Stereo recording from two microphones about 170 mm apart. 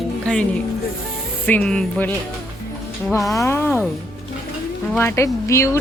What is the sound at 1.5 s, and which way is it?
Speech, 10° left (ahead or behind).